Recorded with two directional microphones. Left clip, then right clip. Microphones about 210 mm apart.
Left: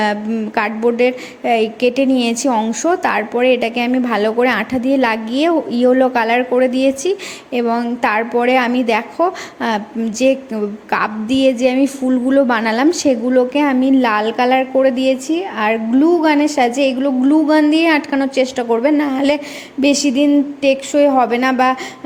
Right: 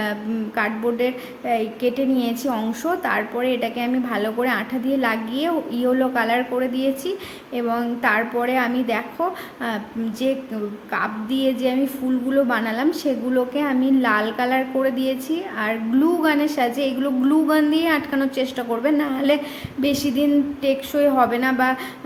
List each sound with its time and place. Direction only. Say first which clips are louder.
0.0 s a woman's voice: left 8 dB; 35° left (ahead or behind)